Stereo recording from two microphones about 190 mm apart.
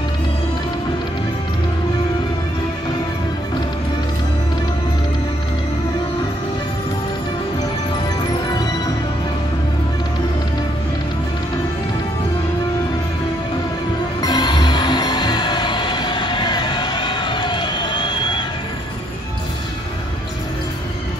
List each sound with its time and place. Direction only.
8.5 s music: 20° left (ahead or behind)
14.2 s music: 20° left (ahead or behind)